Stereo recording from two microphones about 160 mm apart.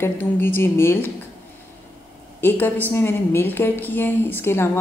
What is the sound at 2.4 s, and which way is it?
A woman's voice, 10° left (ahead or behind).